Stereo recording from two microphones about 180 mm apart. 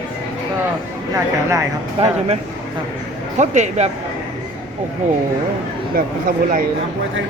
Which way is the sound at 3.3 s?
40° right (ahead or behind).